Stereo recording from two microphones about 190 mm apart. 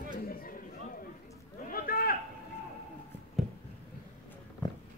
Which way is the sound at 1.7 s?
50° left (ahead or behind).